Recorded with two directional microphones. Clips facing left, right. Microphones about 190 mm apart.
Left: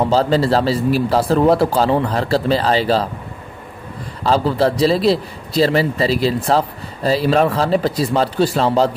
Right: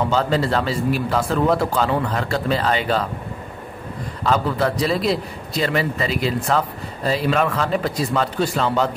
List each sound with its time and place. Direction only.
0.1 s a man's voice: 35° left (ahead or behind)
4.2 s a man's voice: 30° left (ahead or behind)